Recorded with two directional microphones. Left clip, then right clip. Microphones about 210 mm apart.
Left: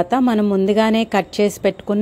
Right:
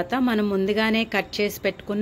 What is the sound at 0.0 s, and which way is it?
A woman's voice, 25° left (ahead or behind).